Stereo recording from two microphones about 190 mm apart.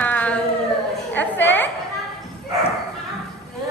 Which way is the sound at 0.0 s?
5° left (ahead or behind).